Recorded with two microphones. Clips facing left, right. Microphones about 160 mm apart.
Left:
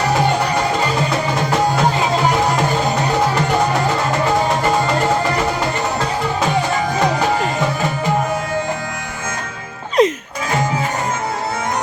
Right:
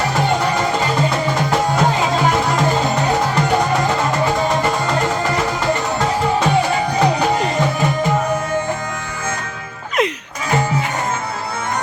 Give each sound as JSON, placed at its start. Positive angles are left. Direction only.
{"t": 10.0, "sound": "music", "side_deg": 35}